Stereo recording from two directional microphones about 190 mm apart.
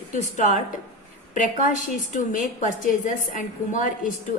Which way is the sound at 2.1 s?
40° left (ahead or behind).